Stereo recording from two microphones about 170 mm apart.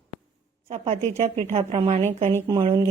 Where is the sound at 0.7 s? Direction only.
40° right (ahead or behind).